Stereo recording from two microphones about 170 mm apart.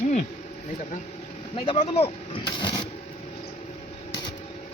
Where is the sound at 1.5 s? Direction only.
35° left (ahead or behind).